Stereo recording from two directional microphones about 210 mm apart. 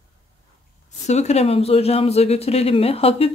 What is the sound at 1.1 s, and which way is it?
Speech, 30° left (ahead or behind).